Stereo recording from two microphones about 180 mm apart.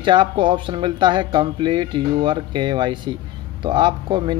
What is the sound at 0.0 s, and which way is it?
Speech, 25° right (ahead or behind).